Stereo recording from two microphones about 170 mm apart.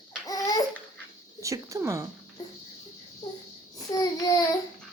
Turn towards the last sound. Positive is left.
turn(degrees=20)  # may be behind; listen again after turning